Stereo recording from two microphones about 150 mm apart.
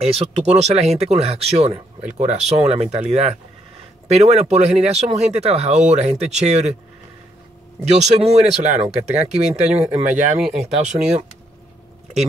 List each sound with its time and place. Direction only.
0.0 s speech: 40° right (ahead or behind)
7.9 s speech: 45° right (ahead or behind)
10.4 s speech: 5° right (ahead or behind)